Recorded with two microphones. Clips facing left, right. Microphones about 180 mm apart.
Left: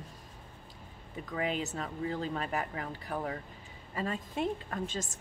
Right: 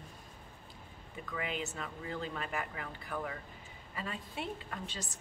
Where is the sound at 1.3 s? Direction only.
40° left (ahead or behind).